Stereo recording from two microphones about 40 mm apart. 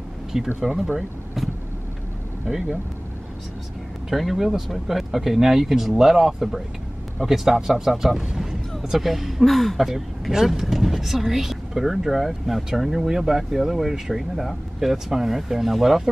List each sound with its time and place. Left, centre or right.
0.3 s speech: centre
0.9 s vehicle: centre
2.4 s speech: centre
4.1 s speech: centre
8.2 s boat: centre
8.9 s speech: centre
9.4 s speech: centre